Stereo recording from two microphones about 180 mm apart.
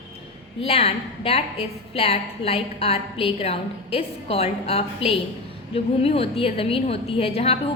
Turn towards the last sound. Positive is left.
turn(degrees=35)  # may be behind; listen again after turning